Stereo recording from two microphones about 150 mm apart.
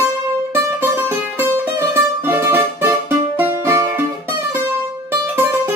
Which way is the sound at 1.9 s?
15° right (ahead or behind).